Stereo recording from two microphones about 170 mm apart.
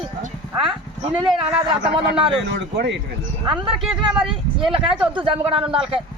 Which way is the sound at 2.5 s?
85° right.